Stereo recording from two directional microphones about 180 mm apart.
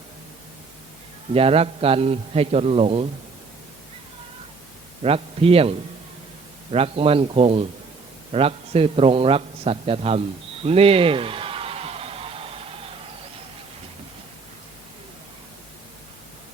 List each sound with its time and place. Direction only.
1.3 s a man's voice: 30° right (ahead or behind)
5.0 s a man's voice: 30° right (ahead or behind)
8.3 s a sound: 35° right (ahead or behind)